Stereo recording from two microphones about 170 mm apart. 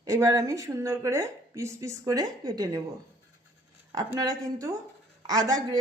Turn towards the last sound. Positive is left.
turn(degrees=-20)  # may be behind; listen again after turning